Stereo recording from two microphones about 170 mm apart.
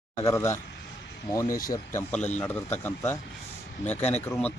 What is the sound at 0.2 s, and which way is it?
Speech, 15° left (ahead or behind).